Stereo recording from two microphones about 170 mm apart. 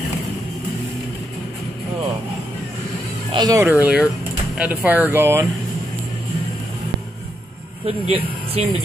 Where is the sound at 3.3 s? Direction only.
25° right (ahead or behind).